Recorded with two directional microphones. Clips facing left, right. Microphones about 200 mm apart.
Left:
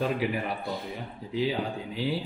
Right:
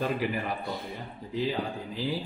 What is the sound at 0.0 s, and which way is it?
Speech, centre (ahead or behind).